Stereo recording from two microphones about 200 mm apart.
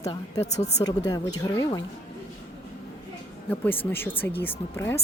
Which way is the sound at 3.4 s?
10° left (ahead or behind).